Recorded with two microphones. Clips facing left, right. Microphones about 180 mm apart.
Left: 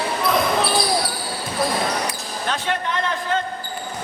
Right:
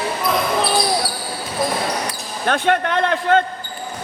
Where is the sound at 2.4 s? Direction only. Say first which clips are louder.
Right 7 dB; 60° right (ahead or behind).